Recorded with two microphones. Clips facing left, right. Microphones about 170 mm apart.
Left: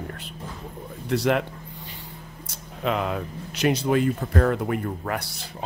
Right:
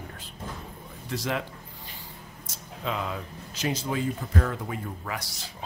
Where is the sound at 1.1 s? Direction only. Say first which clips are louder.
Left 8 dB; 65° left (ahead or behind).